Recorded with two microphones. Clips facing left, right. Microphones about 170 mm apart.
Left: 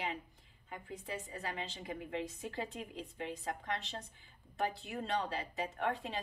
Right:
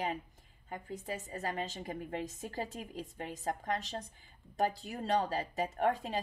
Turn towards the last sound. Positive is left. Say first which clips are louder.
# right 5 dB
turn(degrees=-40)  # may be behind; listen again after turning